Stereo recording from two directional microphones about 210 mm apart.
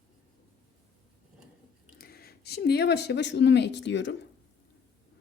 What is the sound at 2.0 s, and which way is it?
Speech, 45° left (ahead or behind).